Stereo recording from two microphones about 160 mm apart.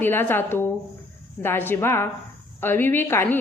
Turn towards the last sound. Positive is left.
turn(degrees=15)  # may be behind; listen again after turning